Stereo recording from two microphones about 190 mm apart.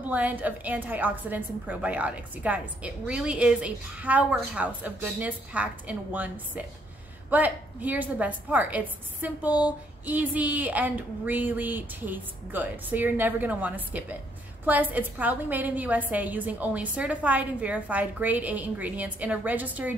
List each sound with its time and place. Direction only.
0.0 s a woman's voice: 10° right (ahead or behind)